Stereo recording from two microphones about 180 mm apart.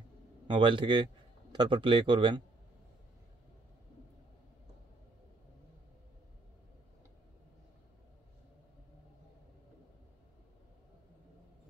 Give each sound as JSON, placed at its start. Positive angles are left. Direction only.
{"t": 0.5, "sound": "a man's voice", "side_deg": -25}